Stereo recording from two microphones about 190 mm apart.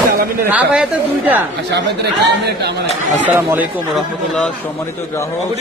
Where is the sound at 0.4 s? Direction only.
10° right (ahead or behind).